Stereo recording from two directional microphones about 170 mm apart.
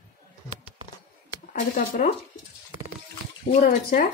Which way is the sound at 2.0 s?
45° left (ahead or behind).